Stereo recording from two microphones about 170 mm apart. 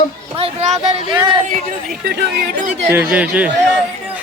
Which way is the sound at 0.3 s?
40° right (ahead or behind).